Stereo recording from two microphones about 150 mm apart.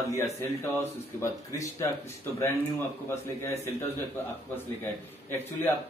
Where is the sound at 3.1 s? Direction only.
15° left (ahead or behind).